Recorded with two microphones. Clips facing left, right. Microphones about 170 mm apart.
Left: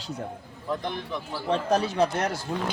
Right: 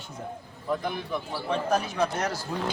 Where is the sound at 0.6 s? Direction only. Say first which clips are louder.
Right 1 dB; 5° right (ahead or behind).